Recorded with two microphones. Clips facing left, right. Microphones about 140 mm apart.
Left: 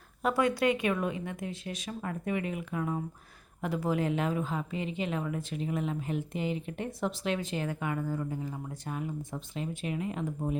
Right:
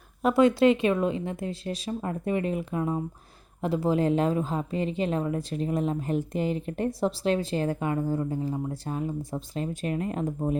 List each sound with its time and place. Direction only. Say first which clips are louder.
0.2 s speech: right 7 dB; 20° right (ahead or behind); by 10.6 s 40° right (ahead or behind)